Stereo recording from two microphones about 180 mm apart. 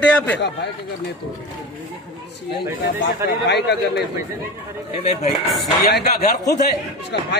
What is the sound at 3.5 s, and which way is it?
Speech, 70° left (ahead or behind).